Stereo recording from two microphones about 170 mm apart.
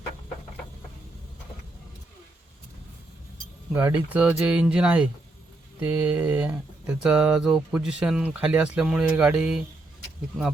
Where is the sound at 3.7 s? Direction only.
10° right (ahead or behind).